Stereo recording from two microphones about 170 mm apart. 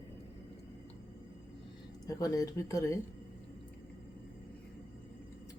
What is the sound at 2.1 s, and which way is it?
Speech, 20° left (ahead or behind).